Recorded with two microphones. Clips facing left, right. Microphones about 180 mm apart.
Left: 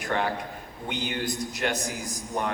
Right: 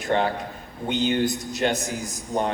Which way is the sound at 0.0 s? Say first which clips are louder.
Right 5 dB; 25° right (ahead or behind).